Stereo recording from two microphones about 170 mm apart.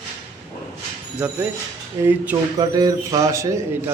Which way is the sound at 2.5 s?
20° right (ahead or behind).